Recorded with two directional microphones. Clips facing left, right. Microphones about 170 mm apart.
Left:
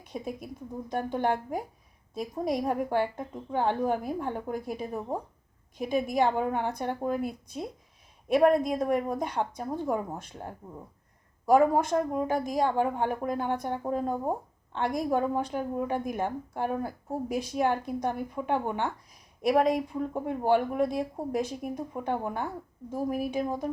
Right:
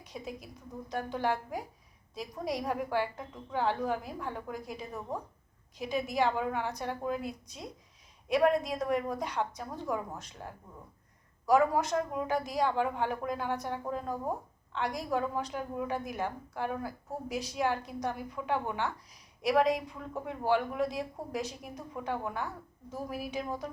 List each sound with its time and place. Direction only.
0.0 s a woman's voice: 50° left (ahead or behind)
4.9 s speech: 30° left (ahead or behind)
5.7 s a woman's voice: 50° left (ahead or behind)
11.4 s a woman's voice: 50° left (ahead or behind)
14.0 s speech: 25° left (ahead or behind)
14.8 s a woman's voice: 50° left (ahead or behind)